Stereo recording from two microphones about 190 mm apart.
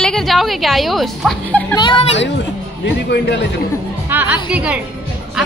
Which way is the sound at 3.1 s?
60° left (ahead or behind).